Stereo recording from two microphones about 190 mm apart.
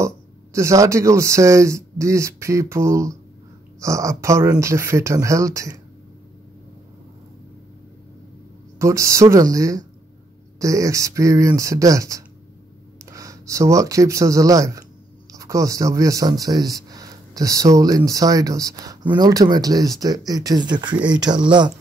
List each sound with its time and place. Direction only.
0.0 s speech: 15° right (ahead or behind)
8.7 s speech: 15° right (ahead or behind)